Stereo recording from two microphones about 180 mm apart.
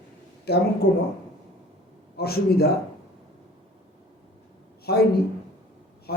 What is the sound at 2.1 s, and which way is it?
Speech, 60° left (ahead or behind).